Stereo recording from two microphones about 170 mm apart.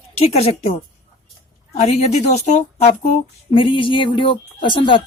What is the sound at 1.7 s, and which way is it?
A woman's voice, 40° left (ahead or behind).